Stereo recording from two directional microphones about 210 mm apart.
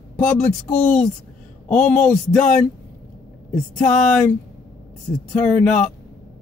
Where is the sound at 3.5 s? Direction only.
5° left (ahead or behind).